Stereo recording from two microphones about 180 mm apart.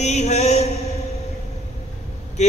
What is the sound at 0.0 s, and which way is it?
Mantra, 40° left (ahead or behind).